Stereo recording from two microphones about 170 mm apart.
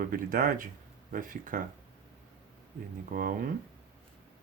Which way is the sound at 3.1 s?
55° right (ahead or behind).